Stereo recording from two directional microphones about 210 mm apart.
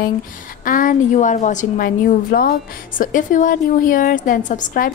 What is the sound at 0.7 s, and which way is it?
A woman's voice, 40° left (ahead or behind).